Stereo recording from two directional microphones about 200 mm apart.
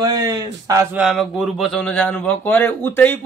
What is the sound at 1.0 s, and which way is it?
Speech, centre (ahead or behind).